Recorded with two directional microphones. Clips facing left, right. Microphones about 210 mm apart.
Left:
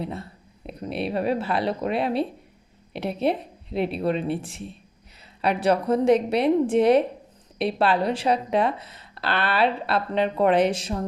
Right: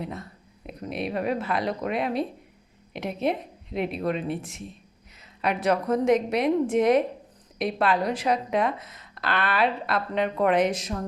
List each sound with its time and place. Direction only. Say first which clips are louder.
0.0 s a woman's voice: left 3 dB; 30° left (ahead or behind)